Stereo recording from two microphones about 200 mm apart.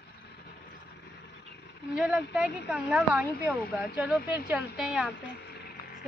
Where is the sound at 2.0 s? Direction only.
5° right (ahead or behind).